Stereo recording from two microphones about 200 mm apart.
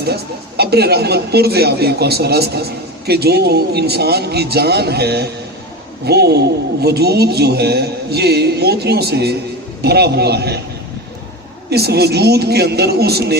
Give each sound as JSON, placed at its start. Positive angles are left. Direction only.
{"t": 0.0, "sound": "speech", "side_deg": -55}
{"t": 11.7, "sound": "speech", "side_deg": -55}